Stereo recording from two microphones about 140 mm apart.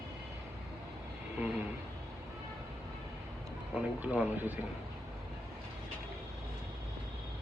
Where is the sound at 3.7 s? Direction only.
10° right (ahead or behind).